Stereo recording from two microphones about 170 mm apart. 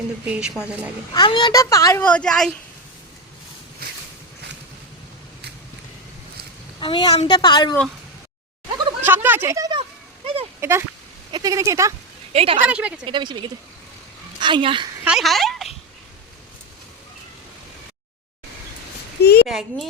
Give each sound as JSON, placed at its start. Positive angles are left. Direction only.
{"t": 0.3, "sound": "a child's voice", "side_deg": -5}
{"t": 1.1, "sound": "a child's voice", "side_deg": 25}
{"t": 6.7, "sound": "speech", "side_deg": 30}
{"t": 9.0, "sound": "a sound", "side_deg": -10}
{"t": 10.6, "sound": "speech", "side_deg": -15}
{"t": 12.3, "sound": "a woman's voice", "side_deg": -35}
{"t": 12.6, "sound": "a woman's voice", "side_deg": -5}
{"t": 13.1, "sound": "speech", "side_deg": -30}
{"t": 14.4, "sound": "speech", "side_deg": -30}
{"t": 15.0, "sound": "speech", "side_deg": 0}
{"t": 19.2, "sound": "a sound", "side_deg": 70}
{"t": 19.5, "sound": "a child's voice", "side_deg": 0}